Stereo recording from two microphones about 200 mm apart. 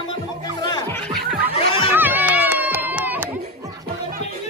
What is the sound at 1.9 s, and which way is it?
Music, 10° right (ahead or behind).